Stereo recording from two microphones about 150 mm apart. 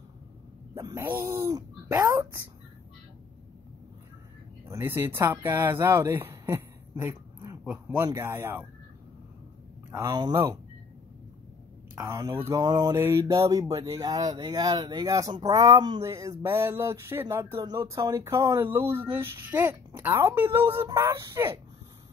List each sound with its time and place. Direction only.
0.7 s speech: 20° right (ahead or behind)
4.6 s speech: 15° right (ahead or behind)
9.8 s speech: 20° right (ahead or behind)
12.0 s speech: 25° right (ahead or behind)